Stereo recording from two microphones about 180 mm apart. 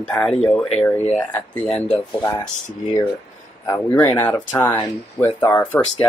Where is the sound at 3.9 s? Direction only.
5° left (ahead or behind).